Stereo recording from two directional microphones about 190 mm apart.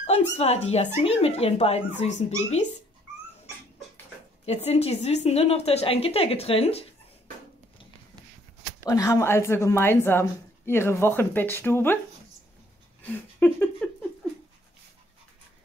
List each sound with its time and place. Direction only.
0.0 s a woman's voice: 35° left (ahead or behind)
4.5 s a woman's voice: 35° left (ahead or behind)
8.8 s a woman's voice: 15° left (ahead or behind)
13.0 s a sound: 10° left (ahead or behind)